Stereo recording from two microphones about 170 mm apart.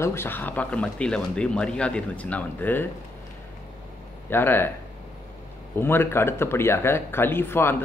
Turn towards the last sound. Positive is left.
turn(degrees=15)  # may be behind; listen again after turning